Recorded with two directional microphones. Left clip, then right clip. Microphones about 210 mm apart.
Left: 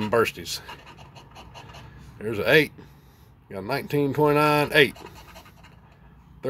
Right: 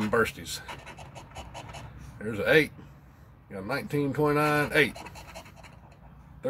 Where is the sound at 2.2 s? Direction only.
40° left (ahead or behind).